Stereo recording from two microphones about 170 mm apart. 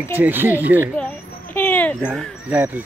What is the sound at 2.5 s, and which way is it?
Speech, 15° right (ahead or behind).